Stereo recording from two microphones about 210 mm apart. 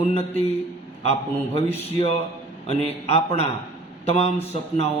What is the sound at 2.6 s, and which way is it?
A man's voice, 30° left (ahead or behind).